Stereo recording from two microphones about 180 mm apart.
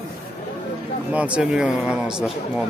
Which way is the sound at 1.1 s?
5° right (ahead or behind).